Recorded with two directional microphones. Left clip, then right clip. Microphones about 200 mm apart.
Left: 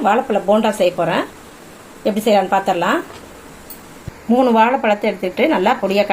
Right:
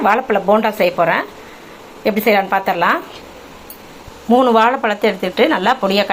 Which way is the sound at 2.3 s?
5° left (ahead or behind).